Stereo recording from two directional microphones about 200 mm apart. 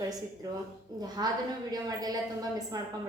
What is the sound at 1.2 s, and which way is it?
A woman's voice, 20° right (ahead or behind).